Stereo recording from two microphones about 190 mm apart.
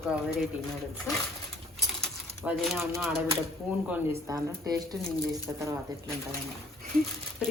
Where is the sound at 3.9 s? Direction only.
15° right (ahead or behind).